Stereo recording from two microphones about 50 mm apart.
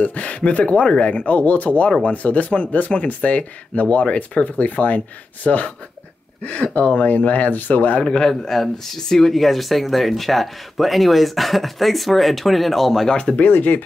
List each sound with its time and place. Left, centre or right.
0.0 s speech: left
8.0 s speech: centre
13.4 s speech: left